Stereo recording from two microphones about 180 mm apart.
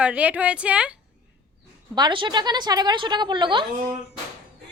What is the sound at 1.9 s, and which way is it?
A woman's voice, 25° right (ahead or behind).